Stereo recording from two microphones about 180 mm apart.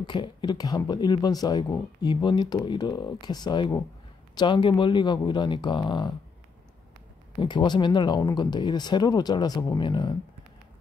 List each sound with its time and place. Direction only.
0.0 s speech: 25° left (ahead or behind)
7.3 s speech: 25° left (ahead or behind)